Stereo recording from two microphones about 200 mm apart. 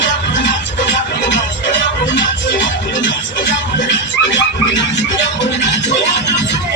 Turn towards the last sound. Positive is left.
turn(degrees=60)  # may be behind; listen again after turning